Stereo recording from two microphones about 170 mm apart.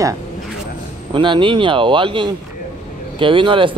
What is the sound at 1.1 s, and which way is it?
Speech, 30° right (ahead or behind).